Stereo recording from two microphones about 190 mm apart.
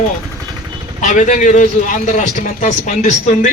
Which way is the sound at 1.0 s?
40° left (ahead or behind).